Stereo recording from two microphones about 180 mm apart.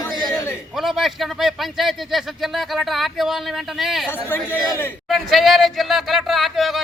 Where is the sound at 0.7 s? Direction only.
Centre (ahead or behind).